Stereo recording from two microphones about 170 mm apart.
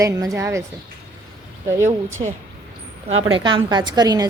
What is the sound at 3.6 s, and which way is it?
Speech, 25° right (ahead or behind).